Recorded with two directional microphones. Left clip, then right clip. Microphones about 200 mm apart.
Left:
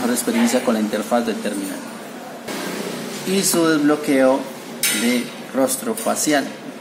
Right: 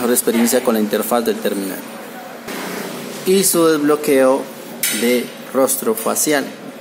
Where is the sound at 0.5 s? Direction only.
50° right (ahead or behind).